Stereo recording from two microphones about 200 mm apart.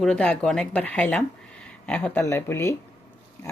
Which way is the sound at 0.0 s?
5° left (ahead or behind).